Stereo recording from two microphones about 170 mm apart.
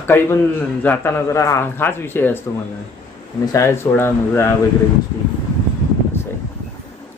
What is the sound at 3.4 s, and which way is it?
Speech, 15° left (ahead or behind).